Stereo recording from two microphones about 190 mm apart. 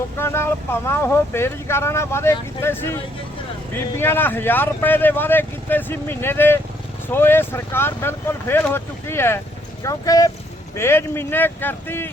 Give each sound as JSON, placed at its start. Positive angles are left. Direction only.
{"t": 0.2, "sound": "speech", "side_deg": 15}